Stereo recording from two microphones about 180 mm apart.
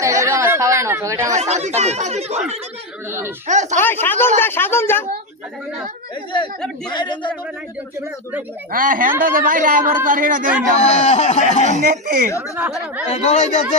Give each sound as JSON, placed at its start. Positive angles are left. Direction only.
{"t": 0.0, "sound": "chatter", "side_deg": -15}
{"t": 1.4, "sound": "speech", "side_deg": -40}
{"t": 3.1, "sound": "a child's voice", "side_deg": -15}
{"t": 3.4, "sound": "speech", "side_deg": -40}
{"t": 3.8, "sound": "speech", "side_deg": 10}
{"t": 6.9, "sound": "speech", "side_deg": 25}
{"t": 8.7, "sound": "speech", "side_deg": -50}
{"t": 10.8, "sound": "speech", "side_deg": 40}
{"t": 11.8, "sound": "speech", "side_deg": -50}
{"t": 13.1, "sound": "speech", "side_deg": 40}